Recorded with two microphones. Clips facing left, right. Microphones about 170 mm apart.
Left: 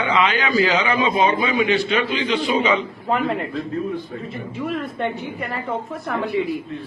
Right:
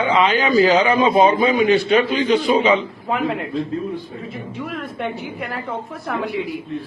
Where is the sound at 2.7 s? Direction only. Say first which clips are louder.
Right 1 dB; centre (ahead or behind).